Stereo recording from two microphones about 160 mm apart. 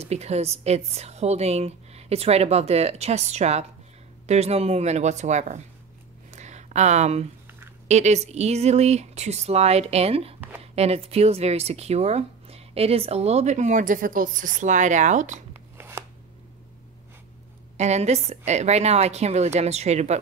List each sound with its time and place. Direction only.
0.0 s speech: 40° right (ahead or behind)
6.3 s a sound: 45° right (ahead or behind)
7.9 s speech: 45° right (ahead or behind)
15.5 s chopping: 15° right (ahead or behind)
17.7 s speech: 45° right (ahead or behind)